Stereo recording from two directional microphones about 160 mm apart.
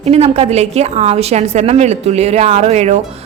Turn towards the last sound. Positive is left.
turn(degrees=-45)  # may be behind; listen again after turning